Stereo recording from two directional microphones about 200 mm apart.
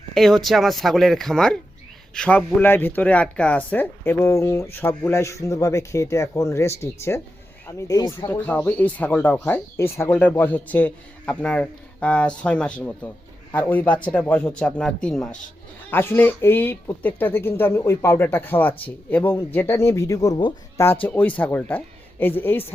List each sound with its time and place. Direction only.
0.1 s speech: centre (ahead or behind); by 8.4 s 20° left (ahead or behind)
8.4 s speech: 10° left (ahead or behind)